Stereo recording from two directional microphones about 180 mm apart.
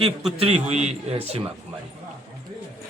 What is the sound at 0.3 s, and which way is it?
A man's voice, 35° right (ahead or behind).